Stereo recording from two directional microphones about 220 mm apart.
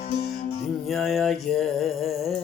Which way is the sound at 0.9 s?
Centre (ahead or behind).